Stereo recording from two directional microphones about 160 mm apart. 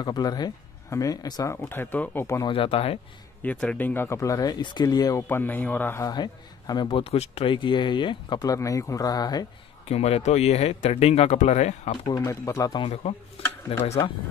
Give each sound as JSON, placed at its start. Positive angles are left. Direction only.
{"t": 0.0, "sound": "speech", "side_deg": 25}
{"t": 2.5, "sound": "speech", "side_deg": 35}
{"t": 3.4, "sound": "speech", "side_deg": 10}
{"t": 6.0, "sound": "speech", "side_deg": 25}
{"t": 9.8, "sound": "speech", "side_deg": 40}
{"t": 12.2, "sound": "speech", "side_deg": 20}
{"t": 13.7, "sound": "speech", "side_deg": 35}